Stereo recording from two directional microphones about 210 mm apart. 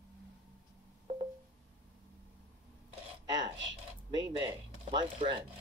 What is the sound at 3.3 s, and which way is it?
Speech, 20° right (ahead or behind).